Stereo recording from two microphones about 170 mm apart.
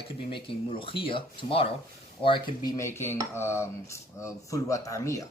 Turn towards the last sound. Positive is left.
turn(degrees=20)  # may be behind; listen again after turning